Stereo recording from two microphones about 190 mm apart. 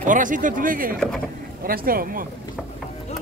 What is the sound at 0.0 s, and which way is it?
Speech, 45° right (ahead or behind).